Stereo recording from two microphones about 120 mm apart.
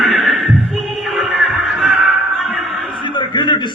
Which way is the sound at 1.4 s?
10° right (ahead or behind).